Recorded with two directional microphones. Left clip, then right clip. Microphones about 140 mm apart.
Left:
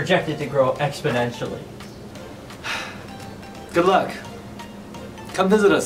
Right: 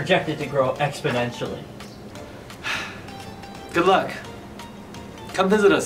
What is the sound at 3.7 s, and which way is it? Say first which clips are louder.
Speech: left 1 dB; centre (ahead or behind).